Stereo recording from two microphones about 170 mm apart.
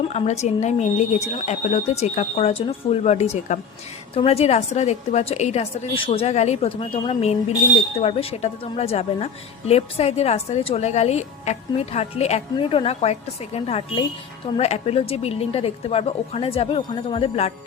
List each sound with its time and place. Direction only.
0.0 s a woman's voice: 40° left (ahead or behind)